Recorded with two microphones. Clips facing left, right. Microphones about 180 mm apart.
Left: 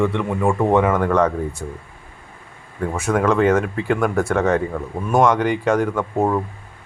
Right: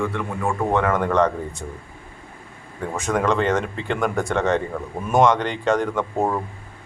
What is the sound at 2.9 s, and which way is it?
Speech, 10° left (ahead or behind).